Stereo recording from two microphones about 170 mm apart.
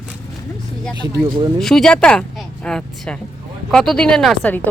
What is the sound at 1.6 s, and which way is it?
Speech, 5° left (ahead or behind).